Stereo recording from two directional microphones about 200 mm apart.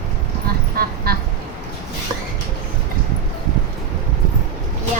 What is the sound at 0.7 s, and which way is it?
Quack, 50° right (ahead or behind).